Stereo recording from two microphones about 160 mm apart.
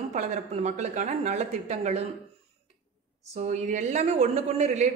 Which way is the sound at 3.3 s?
45° right (ahead or behind).